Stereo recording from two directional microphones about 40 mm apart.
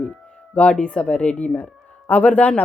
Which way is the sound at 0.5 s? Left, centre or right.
Left.